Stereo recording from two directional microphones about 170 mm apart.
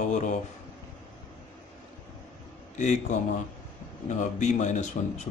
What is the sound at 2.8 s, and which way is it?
Speech, 45° left (ahead or behind).